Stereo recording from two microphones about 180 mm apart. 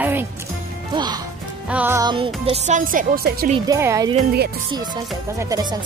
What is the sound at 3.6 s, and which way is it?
Speech, 20° right (ahead or behind).